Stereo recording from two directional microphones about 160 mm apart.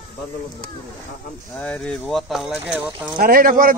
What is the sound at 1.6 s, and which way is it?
Speech, 5° left (ahead or behind).